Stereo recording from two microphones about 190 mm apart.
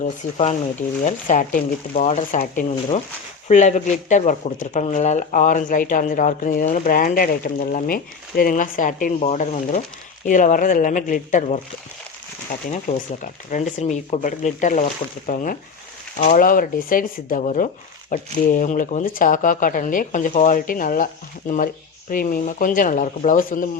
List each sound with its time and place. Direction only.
0.0 s speech: 35° left (ahead or behind)
12.9 s speech: 40° left (ahead or behind)